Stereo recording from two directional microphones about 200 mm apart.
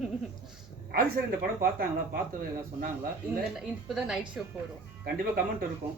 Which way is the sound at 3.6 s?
Centre (ahead or behind).